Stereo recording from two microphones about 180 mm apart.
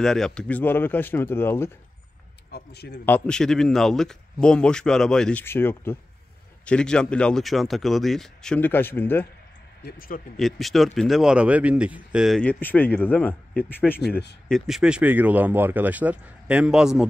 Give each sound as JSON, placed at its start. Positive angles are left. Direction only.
{"t": 0.0, "sound": "speech", "side_deg": 0}
{"t": 2.5, "sound": "a man's voice", "side_deg": 65}
{"t": 3.1, "sound": "speech", "side_deg": 5}
{"t": 9.8, "sound": "speech", "side_deg": 55}
{"t": 10.3, "sound": "speech", "side_deg": 0}
{"t": 14.5, "sound": "speech", "side_deg": -5}